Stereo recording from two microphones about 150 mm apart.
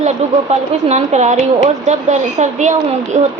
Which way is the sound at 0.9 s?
50° right (ahead or behind).